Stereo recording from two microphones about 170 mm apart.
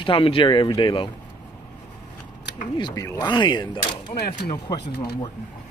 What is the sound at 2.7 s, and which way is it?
Speech, 25° left (ahead or behind).